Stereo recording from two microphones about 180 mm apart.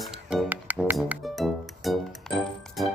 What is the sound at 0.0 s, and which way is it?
Music, 5° right (ahead or behind).